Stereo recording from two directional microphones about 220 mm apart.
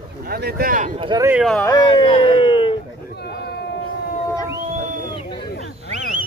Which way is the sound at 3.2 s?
50° left (ahead or behind).